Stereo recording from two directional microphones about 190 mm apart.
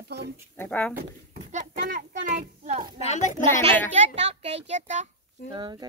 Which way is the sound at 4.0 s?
35° right (ahead or behind).